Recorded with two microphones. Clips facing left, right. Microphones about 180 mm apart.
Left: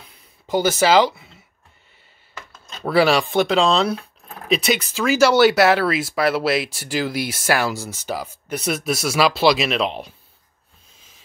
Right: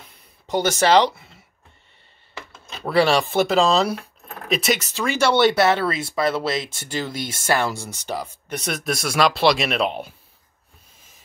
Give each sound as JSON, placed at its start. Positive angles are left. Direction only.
{"t": 0.5, "sound": "speech", "side_deg": 0}
{"t": 2.8, "sound": "speech", "side_deg": 0}
{"t": 11.0, "sound": "a sound", "side_deg": 90}